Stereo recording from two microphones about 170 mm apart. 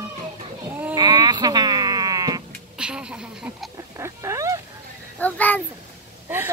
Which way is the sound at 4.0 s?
15° right (ahead or behind).